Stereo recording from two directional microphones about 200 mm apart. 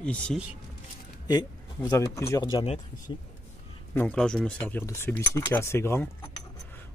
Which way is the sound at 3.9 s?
10° left (ahead or behind).